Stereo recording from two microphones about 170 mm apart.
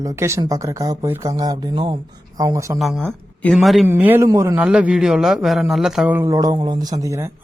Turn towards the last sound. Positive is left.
turn(degrees=-20)  # may be behind; listen again after turning